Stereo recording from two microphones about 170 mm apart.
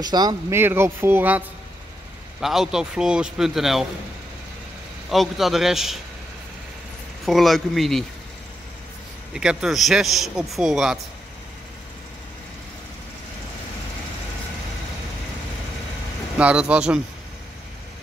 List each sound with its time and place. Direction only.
0.0 s speech: 25° right (ahead or behind)
0.6 s speech: 15° right (ahead or behind)
2.4 s speech: centre (ahead or behind)
5.1 s speech: centre (ahead or behind)
7.2 s speech: centre (ahead or behind)
9.3 s speech: 5° right (ahead or behind)
16.3 s speech: 5° right (ahead or behind)